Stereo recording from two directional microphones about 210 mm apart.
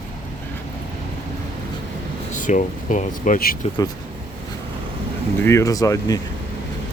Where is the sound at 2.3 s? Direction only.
35° left (ahead or behind).